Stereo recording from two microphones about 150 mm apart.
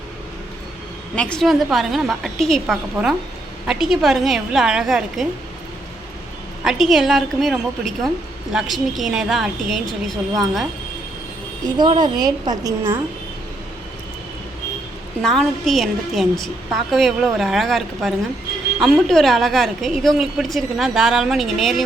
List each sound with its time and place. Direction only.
1.1 s a woman's voice: 5° left (ahead or behind)
6.7 s a woman's voice: centre (ahead or behind)
11.8 s a woman's voice: 30° right (ahead or behind)
15.2 s a woman's voice: 5° left (ahead or behind)